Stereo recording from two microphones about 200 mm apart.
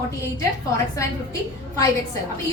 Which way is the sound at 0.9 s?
15° left (ahead or behind).